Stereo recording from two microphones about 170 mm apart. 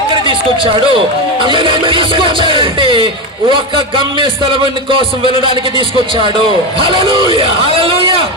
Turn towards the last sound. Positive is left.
turn(degrees=-30)  # may be behind; listen again after turning